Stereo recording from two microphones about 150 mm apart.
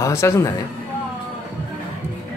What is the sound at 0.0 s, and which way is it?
Speech, 20° left (ahead or behind).